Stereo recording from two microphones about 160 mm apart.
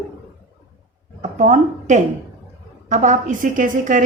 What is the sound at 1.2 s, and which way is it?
A woman's voice, 50° right (ahead or behind).